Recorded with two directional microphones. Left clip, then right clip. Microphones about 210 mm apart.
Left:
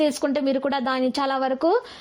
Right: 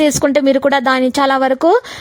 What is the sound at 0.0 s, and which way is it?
A woman's voice, 45° right (ahead or behind).